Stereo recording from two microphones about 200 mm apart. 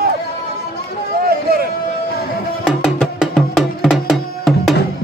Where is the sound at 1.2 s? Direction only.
50° right (ahead or behind).